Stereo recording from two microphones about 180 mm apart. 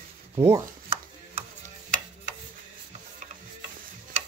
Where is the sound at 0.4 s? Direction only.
15° right (ahead or behind).